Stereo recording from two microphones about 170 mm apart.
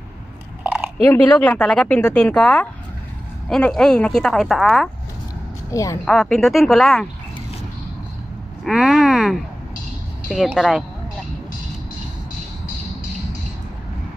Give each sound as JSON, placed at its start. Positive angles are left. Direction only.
{"t": 0.9, "sound": "speech", "side_deg": 10}
{"t": 5.7, "sound": "a woman's voice", "side_deg": 20}
{"t": 6.0, "sound": "speech", "side_deg": 5}
{"t": 8.6, "sound": "speech", "side_deg": 0}